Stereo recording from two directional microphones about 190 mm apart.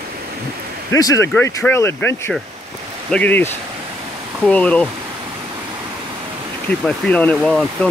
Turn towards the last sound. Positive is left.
turn(degrees=5)  # may be behind; listen again after turning